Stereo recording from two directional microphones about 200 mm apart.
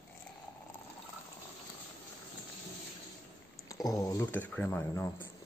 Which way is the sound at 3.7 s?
15° left (ahead or behind).